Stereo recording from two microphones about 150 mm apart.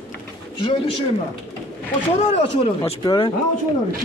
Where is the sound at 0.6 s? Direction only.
30° left (ahead or behind).